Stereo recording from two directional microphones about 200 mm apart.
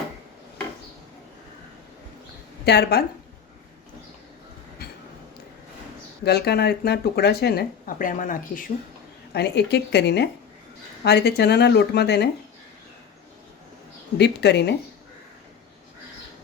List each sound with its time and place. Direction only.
2.6 s speech: 55° left (ahead or behind)
6.2 s speech: 55° left (ahead or behind)
9.3 s speech: 55° left (ahead or behind)
14.2 s speech: 55° left (ahead or behind)